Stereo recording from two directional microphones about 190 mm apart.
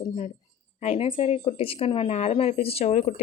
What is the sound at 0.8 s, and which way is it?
Speech, 30° left (ahead or behind).